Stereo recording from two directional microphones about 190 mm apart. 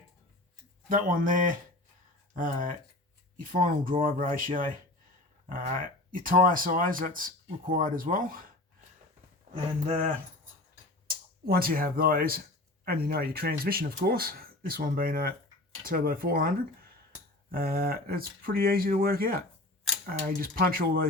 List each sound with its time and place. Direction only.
0.9 s speech: 45° right (ahead or behind)
11.4 s speech: 50° right (ahead or behind)